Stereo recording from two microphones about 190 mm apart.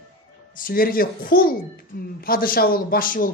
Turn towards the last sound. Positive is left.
turn(degrees=45)  # may be behind; listen again after turning